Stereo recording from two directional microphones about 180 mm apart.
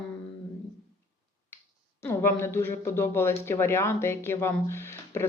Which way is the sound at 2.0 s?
15° left (ahead or behind).